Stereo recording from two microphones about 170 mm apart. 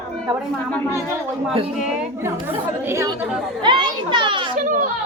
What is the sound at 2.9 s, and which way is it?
Speech, 15° right (ahead or behind).